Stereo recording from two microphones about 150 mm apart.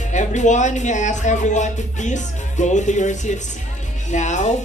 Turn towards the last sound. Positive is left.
turn(degrees=55)  # may be behind; listen again after turning